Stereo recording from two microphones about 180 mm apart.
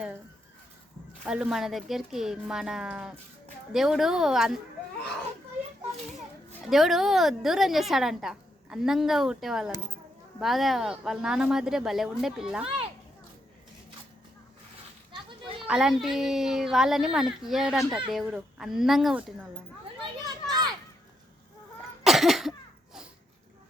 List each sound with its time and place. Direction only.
1.2 s a woman's voice: 5° right (ahead or behind)
6.7 s a woman's voice: centre (ahead or behind)
15.1 s children playing: 30° right (ahead or behind)
15.6 s a woman's voice: 5° right (ahead or behind)
20.2 s children playing: 20° right (ahead or behind)
22.0 s cough: centre (ahead or behind)